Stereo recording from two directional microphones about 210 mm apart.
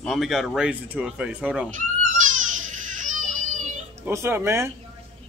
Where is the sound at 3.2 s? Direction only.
35° right (ahead or behind).